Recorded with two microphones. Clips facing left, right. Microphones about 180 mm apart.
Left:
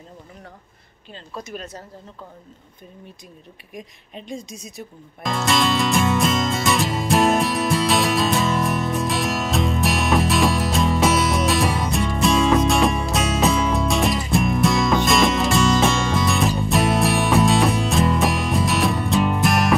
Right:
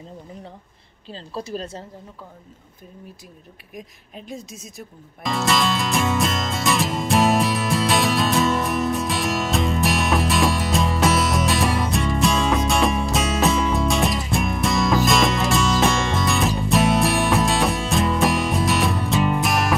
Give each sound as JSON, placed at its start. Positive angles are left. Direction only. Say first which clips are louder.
{"t": 1.1, "sound": "a woman's voice", "louder": "right 4 dB", "side_deg": -30}
{"t": 3.7, "sound": "music", "louder": "left 1 dB", "side_deg": -5}